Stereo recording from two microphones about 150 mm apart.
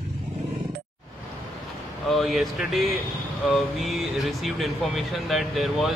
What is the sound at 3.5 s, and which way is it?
Speech, centre (ahead or behind).